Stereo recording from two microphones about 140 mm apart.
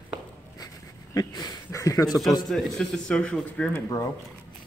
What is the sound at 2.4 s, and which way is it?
Speech, centre (ahead or behind).